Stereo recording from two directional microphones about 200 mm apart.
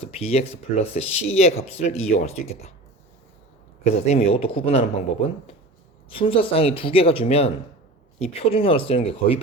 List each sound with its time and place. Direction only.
0.0 s speech: 30° left (ahead or behind)
3.8 s speech: 30° left (ahead or behind)
6.1 s speech: 25° left (ahead or behind)